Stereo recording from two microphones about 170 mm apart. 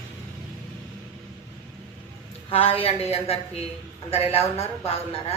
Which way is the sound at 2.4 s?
35° left (ahead or behind).